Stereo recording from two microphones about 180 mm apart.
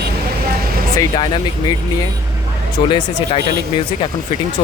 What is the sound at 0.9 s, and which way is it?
Speech, 25° left (ahead or behind).